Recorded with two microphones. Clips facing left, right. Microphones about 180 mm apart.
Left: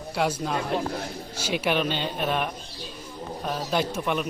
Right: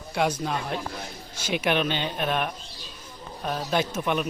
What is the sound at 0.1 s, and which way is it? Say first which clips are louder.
A man's voice: even; 5° left (ahead or behind).